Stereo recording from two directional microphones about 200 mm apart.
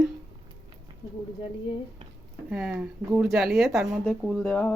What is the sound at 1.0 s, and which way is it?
Speech, 20° left (ahead or behind).